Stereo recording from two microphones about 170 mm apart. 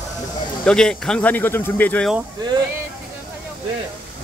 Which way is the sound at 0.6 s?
5° left (ahead or behind).